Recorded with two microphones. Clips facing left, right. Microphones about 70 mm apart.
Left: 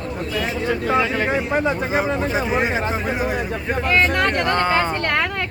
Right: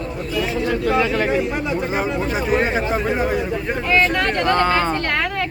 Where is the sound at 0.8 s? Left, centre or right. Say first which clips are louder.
Right 1 dB; centre.